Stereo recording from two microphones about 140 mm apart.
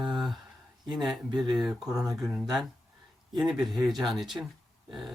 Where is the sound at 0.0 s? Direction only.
Centre (ahead or behind).